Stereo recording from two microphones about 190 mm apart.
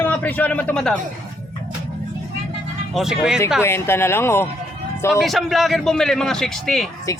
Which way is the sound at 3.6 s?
15° left (ahead or behind).